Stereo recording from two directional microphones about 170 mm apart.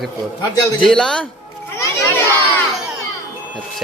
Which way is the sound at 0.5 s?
20° left (ahead or behind).